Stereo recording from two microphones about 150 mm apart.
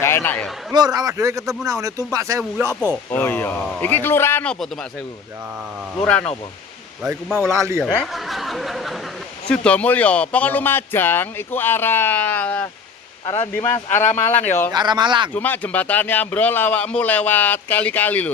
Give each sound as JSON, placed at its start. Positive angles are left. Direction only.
{"t": 0.0, "sound": "a man's voice", "side_deg": 15}
{"t": 0.7, "sound": "speech", "side_deg": -25}
{"t": 3.1, "sound": "speech", "side_deg": 15}
{"t": 5.9, "sound": "speech", "side_deg": 5}
{"t": 7.0, "sound": "speech", "side_deg": -5}
{"t": 7.8, "sound": "snicker", "side_deg": 0}
{"t": 9.5, "sound": "speech", "side_deg": 10}
{"t": 14.7, "sound": "speech", "side_deg": -30}
{"t": 15.3, "sound": "speech", "side_deg": 10}